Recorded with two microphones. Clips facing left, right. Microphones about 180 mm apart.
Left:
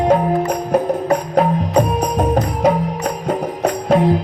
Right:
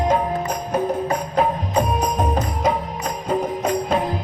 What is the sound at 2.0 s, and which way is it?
Music, 65° left (ahead or behind).